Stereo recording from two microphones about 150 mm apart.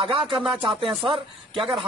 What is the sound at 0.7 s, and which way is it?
Speech, 35° right (ahead or behind).